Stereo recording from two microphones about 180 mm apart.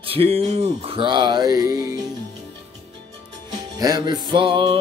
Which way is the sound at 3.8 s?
25° right (ahead or behind).